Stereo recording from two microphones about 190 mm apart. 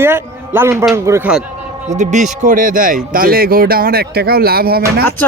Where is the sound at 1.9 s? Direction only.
40° right (ahead or behind).